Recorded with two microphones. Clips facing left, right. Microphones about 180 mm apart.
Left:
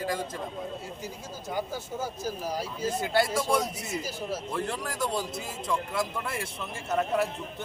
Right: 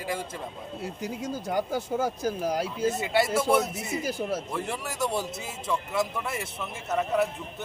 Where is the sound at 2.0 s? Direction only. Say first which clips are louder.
Right 3 dB; 55° right (ahead or behind).